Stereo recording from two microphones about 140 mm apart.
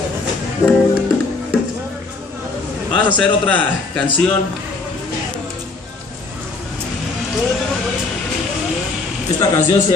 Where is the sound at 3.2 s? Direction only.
10° left (ahead or behind).